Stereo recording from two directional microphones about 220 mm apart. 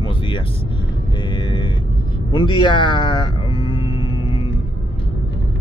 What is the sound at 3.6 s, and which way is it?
Music, 25° left (ahead or behind).